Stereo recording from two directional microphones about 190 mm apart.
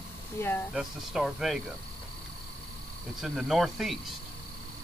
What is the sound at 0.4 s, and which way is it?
Speech, 10° left (ahead or behind).